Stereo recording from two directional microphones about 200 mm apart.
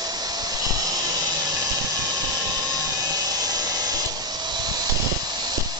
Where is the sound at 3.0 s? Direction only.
20° right (ahead or behind).